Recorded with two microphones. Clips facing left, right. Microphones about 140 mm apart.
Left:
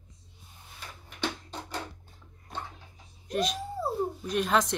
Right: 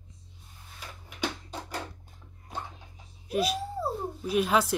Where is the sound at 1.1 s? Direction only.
10° right (ahead or behind).